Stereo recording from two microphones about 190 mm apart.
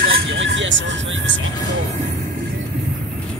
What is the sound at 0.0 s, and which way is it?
Vehicle, 75° right (ahead or behind).